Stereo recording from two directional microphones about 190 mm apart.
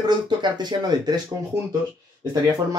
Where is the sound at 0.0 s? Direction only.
20° right (ahead or behind).